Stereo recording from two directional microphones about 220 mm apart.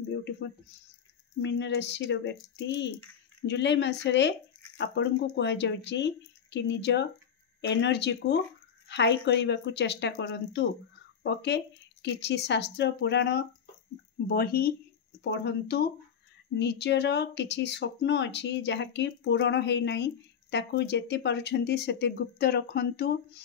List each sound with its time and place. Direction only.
1.4 s speech: 55° left (ahead or behind)